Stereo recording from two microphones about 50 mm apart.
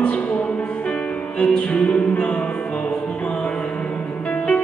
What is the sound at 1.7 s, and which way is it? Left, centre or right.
Music, left.